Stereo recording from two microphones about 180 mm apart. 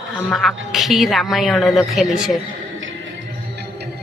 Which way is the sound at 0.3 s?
Centre (ahead or behind).